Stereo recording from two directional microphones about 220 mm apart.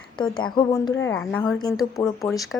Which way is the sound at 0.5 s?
15° left (ahead or behind).